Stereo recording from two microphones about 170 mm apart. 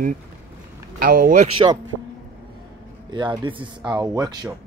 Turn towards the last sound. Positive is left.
turn(degrees=-20)  # may be behind; listen again after turning